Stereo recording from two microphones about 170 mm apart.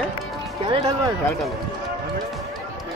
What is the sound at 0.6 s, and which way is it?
Speech, 30° right (ahead or behind).